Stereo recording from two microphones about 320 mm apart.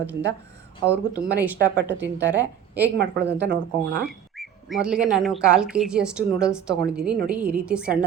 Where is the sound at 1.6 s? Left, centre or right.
Right.